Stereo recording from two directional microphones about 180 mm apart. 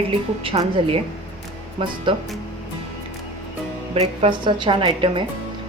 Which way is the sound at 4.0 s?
30° right (ahead or behind).